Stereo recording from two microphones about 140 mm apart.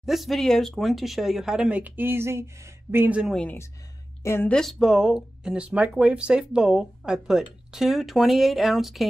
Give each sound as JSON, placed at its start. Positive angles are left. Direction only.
{"t": 0.0, "sound": "speech", "side_deg": 0}
{"t": 4.2, "sound": "speech", "side_deg": 15}
{"t": 4.6, "sound": "speech", "side_deg": 0}